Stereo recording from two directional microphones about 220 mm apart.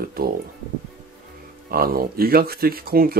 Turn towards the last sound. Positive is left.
turn(degrees=-40)  # may be behind; listen again after turning